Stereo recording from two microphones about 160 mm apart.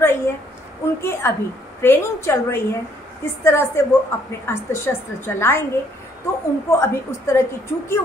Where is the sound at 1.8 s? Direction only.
15° left (ahead or behind).